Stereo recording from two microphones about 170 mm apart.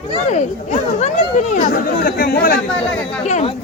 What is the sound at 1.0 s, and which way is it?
Speech, 45° left (ahead or behind).